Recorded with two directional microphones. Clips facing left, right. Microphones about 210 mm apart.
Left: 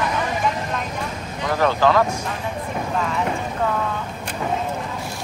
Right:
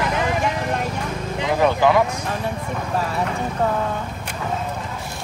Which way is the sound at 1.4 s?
15° right (ahead or behind).